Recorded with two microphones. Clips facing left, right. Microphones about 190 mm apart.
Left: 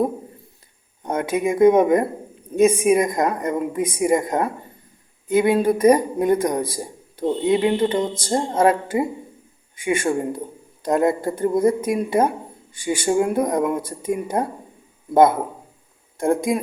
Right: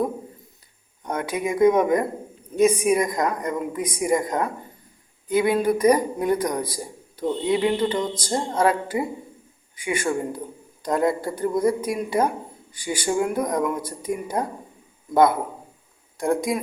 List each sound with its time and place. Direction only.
1.0 s a man's voice: 25° left (ahead or behind)
16.2 s a man's voice: 25° left (ahead or behind)